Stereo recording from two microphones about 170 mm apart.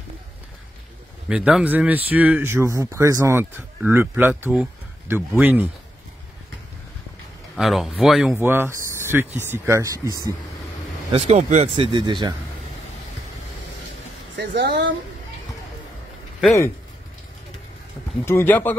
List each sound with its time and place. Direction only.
1.3 s speech: 5° right (ahead or behind)
7.5 s speech: centre (ahead or behind)
8.4 s speech: 15° right (ahead or behind)
11.1 s speech: 35° right (ahead or behind)
14.3 s speech: 90° right
18.2 s speech: 10° left (ahead or behind)